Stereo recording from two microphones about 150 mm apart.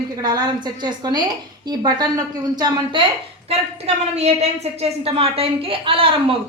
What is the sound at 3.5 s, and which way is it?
A woman's voice, 45° right (ahead or behind).